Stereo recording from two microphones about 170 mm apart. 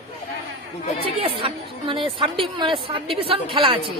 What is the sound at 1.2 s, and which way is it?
A woman's voice, 30° right (ahead or behind).